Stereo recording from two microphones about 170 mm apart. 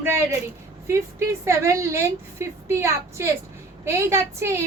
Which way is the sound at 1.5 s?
15° right (ahead or behind).